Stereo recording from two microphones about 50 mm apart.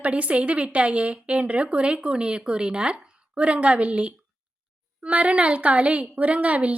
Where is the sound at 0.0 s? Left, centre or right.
Right.